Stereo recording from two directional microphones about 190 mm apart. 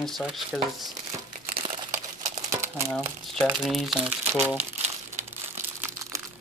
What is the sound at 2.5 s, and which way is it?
Crumpling, 15° right (ahead or behind).